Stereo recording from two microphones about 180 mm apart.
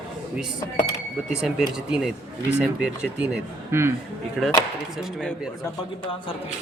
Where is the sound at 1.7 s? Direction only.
5° right (ahead or behind).